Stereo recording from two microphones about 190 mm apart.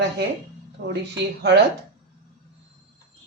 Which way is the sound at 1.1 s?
65° right (ahead or behind).